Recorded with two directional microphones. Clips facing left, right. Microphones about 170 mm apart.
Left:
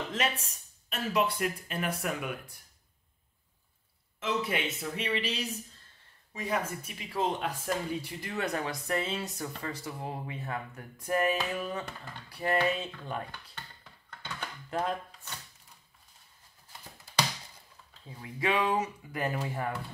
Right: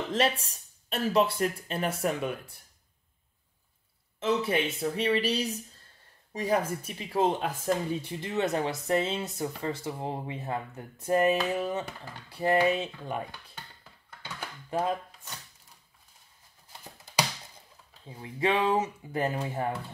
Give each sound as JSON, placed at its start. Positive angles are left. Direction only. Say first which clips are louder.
{"t": 0.1, "sound": "speech", "louder": "right 5 dB", "side_deg": -35}
{"t": 4.2, "sound": "speech", "louder": "right 5 dB", "side_deg": -30}
{"t": 14.2, "sound": "a sound", "louder": "even", "side_deg": -5}
{"t": 18.0, "sound": "speech", "louder": "right 3 dB", "side_deg": -25}